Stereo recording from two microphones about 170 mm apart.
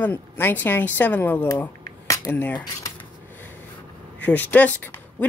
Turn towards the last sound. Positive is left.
turn(degrees=10)  # may be behind; listen again after turning